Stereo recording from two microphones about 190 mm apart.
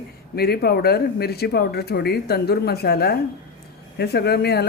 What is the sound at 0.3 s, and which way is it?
Speech, 55° left (ahead or behind).